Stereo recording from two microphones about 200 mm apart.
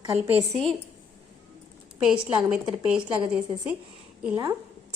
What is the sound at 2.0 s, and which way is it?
A woman's voice, 5° right (ahead or behind).